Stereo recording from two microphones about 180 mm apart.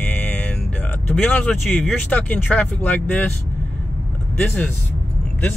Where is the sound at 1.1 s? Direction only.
5° left (ahead or behind).